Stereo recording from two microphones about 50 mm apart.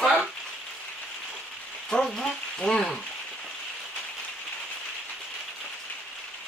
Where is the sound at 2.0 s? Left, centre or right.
Centre.